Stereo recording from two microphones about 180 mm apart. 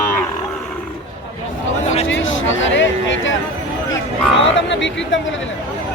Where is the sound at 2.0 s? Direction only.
90° left.